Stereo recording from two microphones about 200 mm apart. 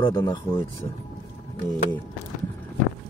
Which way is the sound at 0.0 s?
20° left (ahead or behind).